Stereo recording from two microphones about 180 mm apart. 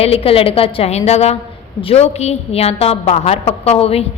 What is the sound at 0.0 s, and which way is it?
A woman's voice, 35° left (ahead or behind).